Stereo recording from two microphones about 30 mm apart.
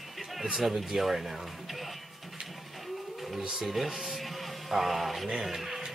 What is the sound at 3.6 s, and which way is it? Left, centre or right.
Speech, centre.